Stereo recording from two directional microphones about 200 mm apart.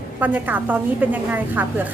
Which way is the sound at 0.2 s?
10° right (ahead or behind).